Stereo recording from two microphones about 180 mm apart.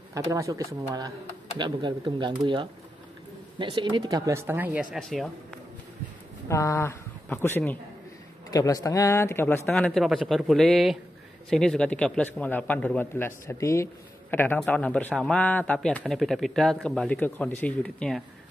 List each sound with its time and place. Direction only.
0.1 s speech: 20° right (ahead or behind); by 5.3 s centre (ahead or behind)
6.5 s a man's voice: 15° left (ahead or behind)